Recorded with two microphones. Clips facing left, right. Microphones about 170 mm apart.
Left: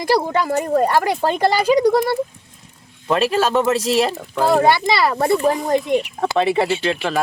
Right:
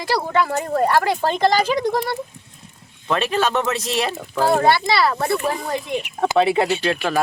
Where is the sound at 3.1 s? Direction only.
5° left (ahead or behind).